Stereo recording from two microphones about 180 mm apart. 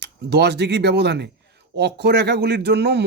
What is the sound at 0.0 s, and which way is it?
Speech, 70° right (ahead or behind).